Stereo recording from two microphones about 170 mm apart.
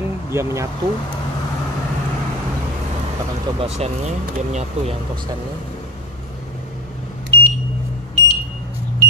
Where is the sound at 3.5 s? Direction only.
35° right (ahead or behind).